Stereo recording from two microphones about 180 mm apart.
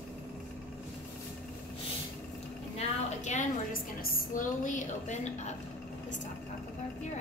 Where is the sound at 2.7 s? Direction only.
40° left (ahead or behind).